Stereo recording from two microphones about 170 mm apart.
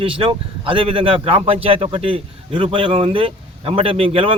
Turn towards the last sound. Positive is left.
turn(degrees=-30)  # may be behind; listen again after turning